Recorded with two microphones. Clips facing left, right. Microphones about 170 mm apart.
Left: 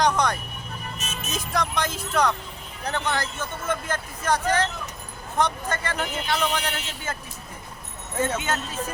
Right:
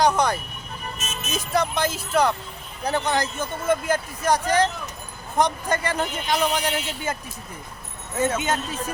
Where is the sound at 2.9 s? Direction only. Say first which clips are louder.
Right 4 dB; 15° right (ahead or behind).